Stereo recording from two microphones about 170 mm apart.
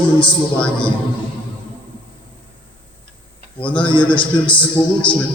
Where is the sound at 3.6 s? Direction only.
30° left (ahead or behind).